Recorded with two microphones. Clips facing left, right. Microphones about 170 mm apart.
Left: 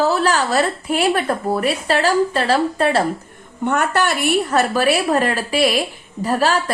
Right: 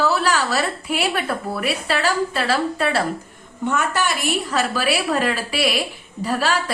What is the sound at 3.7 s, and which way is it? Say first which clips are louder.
A woman's voice: left 3 dB; 60° left (ahead or behind).